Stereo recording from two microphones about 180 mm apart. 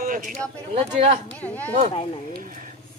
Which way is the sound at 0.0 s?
50° right (ahead or behind).